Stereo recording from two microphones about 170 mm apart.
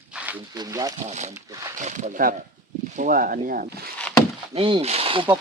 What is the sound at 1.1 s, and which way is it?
Speech, 45° right (ahead or behind).